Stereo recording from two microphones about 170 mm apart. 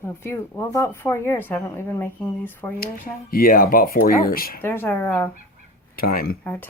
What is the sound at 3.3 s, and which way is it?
Speech, 55° left (ahead or behind).